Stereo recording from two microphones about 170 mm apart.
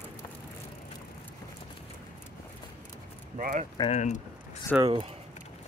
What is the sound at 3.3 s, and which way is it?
Speech, 50° right (ahead or behind).